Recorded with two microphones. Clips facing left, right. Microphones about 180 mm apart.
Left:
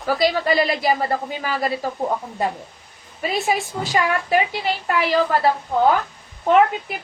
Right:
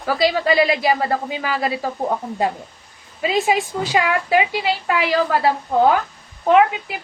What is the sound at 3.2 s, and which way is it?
A woman's voice, 15° right (ahead or behind).